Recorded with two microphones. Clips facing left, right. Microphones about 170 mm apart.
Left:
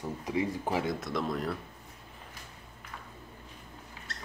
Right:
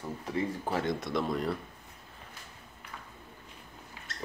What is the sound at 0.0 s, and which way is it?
A man's voice, 15° left (ahead or behind).